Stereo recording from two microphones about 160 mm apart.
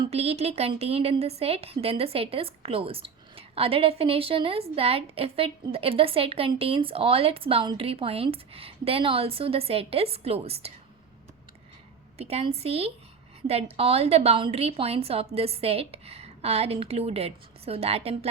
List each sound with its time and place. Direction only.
0.0 s a woman's voice: 40° right (ahead or behind)
12.1 s a woman's voice: 40° right (ahead or behind)